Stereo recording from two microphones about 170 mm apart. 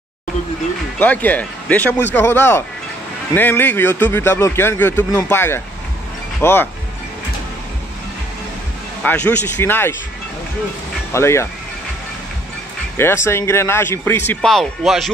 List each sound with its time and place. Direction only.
0.9 s a man's voice: 10° left (ahead or behind)
9.0 s a man's voice: 10° left (ahead or behind)
11.1 s a man's voice: 15° left (ahead or behind)
12.9 s a man's voice: 15° left (ahead or behind)